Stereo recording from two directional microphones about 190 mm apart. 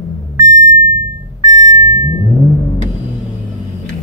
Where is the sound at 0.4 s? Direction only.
20° right (ahead or behind).